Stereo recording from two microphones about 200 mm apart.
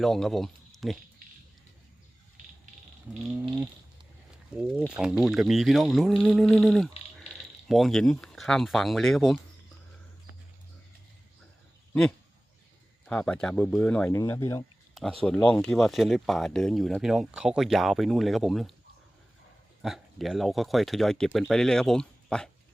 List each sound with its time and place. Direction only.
0.0 s speech: centre (ahead or behind)
3.2 s speech: centre (ahead or behind)
7.3 s mechanisms: 30° left (ahead or behind)
7.7 s speech: centre (ahead or behind)
13.1 s speech: 5° left (ahead or behind)
15.2 s speech: 5° left (ahead or behind)
19.8 s speech: centre (ahead or behind)